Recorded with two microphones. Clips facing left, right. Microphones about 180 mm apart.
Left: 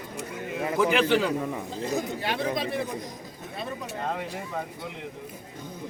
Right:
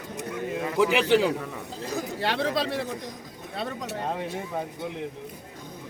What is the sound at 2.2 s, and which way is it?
Speech, 80° right.